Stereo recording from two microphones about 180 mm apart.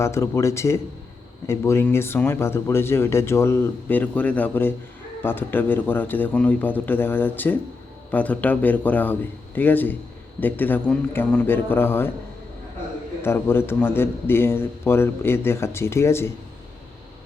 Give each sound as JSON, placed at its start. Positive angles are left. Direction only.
{"t": 0.0, "sound": "speech", "side_deg": 15}
{"t": 13.2, "sound": "speech", "side_deg": 10}